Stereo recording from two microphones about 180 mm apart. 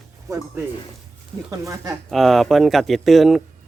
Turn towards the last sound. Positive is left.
turn(degrees=0)  # may be behind; listen again after turning